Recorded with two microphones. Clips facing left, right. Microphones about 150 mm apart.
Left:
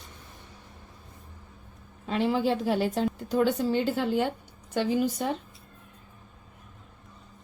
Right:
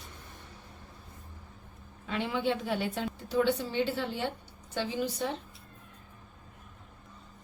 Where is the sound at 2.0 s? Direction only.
35° left (ahead or behind).